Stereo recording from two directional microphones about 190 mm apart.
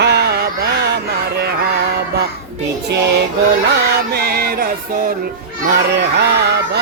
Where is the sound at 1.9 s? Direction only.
60° right (ahead or behind).